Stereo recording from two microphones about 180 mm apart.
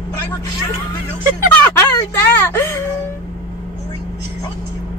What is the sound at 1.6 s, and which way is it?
Speech, 15° left (ahead or behind).